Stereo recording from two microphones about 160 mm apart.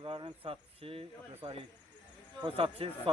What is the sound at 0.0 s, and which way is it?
Speech, 30° right (ahead or behind).